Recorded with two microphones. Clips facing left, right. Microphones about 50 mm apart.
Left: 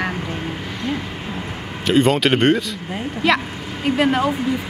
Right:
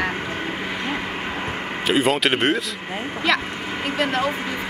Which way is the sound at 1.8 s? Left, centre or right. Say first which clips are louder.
Left 3 dB; centre.